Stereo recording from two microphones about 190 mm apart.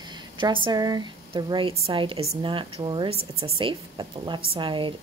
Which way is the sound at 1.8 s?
30° right (ahead or behind).